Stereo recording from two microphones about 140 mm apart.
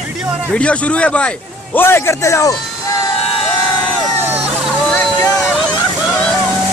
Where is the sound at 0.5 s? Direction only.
10° left (ahead or behind).